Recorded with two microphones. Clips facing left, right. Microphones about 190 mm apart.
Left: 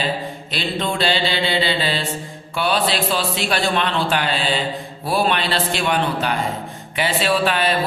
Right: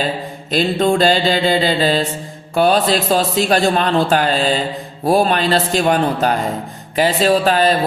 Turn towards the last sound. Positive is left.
turn(degrees=-40)  # may be behind; listen again after turning